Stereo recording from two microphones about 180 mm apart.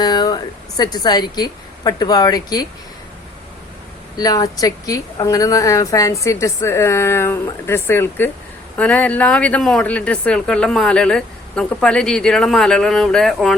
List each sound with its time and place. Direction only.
0.0 s a woman's voice: 25° left (ahead or behind)
4.2 s a woman's voice: 20° left (ahead or behind); by 13.6 s centre (ahead or behind)